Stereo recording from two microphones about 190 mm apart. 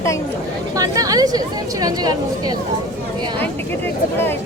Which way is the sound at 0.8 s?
20° right (ahead or behind).